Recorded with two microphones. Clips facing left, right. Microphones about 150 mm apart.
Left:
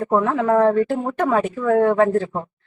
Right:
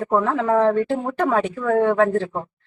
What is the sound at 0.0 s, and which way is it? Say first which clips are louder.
A woman's voice: left 1 dB; centre (ahead or behind).